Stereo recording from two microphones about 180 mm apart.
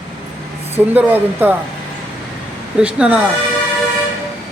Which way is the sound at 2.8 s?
5° right (ahead or behind).